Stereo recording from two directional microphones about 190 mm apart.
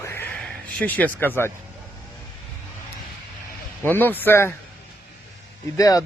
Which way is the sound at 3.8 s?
10° left (ahead or behind).